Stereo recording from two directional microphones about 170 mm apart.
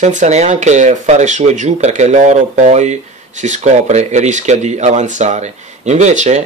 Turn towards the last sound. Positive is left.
turn(degrees=-45)  # may be behind; listen again after turning